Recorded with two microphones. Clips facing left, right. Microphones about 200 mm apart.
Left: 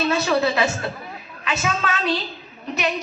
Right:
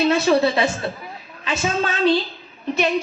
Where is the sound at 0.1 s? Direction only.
25° right (ahead or behind).